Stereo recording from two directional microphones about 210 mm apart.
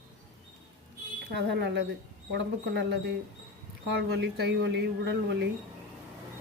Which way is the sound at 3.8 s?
55° right (ahead or behind).